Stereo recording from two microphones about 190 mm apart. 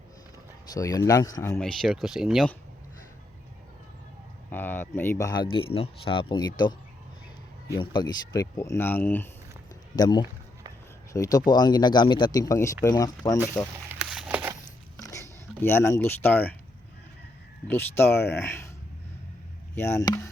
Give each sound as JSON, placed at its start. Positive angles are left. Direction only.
{"t": 0.7, "sound": "speech", "side_deg": 20}
{"t": 4.5, "sound": "speech", "side_deg": 10}
{"t": 7.8, "sound": "speech", "side_deg": 25}
{"t": 9.9, "sound": "speech", "side_deg": 20}
{"t": 13.8, "sound": "a sound", "side_deg": -5}
{"t": 14.9, "sound": "a sound", "side_deg": 15}
{"t": 17.7, "sound": "speech", "side_deg": 10}
{"t": 19.7, "sound": "speech", "side_deg": 15}